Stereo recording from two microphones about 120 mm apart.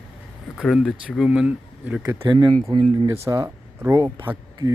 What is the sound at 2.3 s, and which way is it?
Speech, 40° right (ahead or behind).